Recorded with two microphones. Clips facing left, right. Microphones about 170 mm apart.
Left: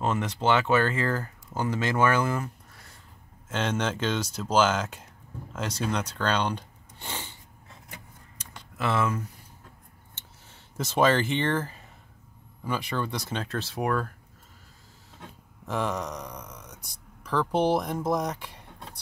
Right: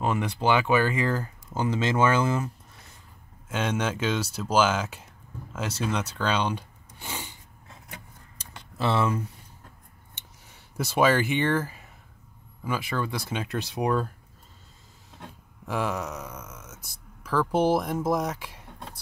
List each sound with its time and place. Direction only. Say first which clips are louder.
0.0 s speech: right 1 dB; 10° right (ahead or behind)
3.4 s speech: right 1 dB; 10° right (ahead or behind)
8.4 s a sound: right 2 dB; 30° right (ahead or behind)
10.1 s a sound: right 1 dB; 15° right (ahead or behind)
12.6 s speech: right 1 dB; 10° right (ahead or behind)
15.6 s speech: even; 5° right (ahead or behind)